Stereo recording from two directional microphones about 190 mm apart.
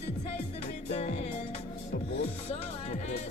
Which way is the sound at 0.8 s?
35° left (ahead or behind).